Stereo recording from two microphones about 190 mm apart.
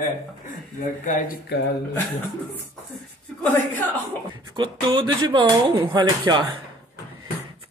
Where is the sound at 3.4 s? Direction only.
10° left (ahead or behind).